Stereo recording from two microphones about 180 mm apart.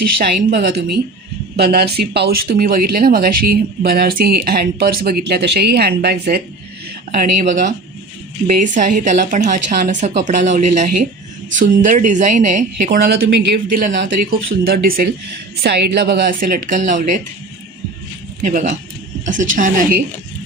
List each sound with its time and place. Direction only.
0.0 s speech: 60° right (ahead or behind)
7.1 s a woman's voice: 45° right (ahead or behind)
18.4 s a woman's voice: 50° right (ahead or behind)